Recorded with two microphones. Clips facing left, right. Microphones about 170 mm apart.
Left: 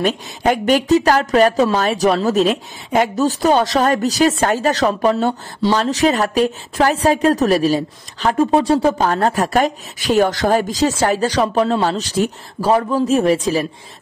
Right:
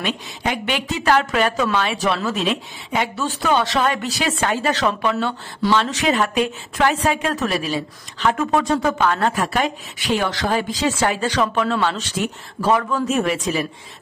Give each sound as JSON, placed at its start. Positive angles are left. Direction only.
{"t": 0.0, "sound": "speech", "side_deg": 45}